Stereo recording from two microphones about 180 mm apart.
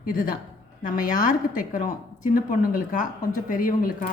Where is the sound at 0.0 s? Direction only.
50° left (ahead or behind).